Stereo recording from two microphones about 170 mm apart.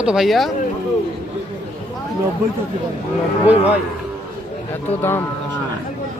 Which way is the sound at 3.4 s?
10° right (ahead or behind).